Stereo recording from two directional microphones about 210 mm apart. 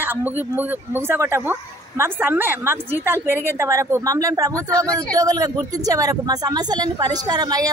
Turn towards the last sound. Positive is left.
turn(degrees=-20)  # may be behind; listen again after turning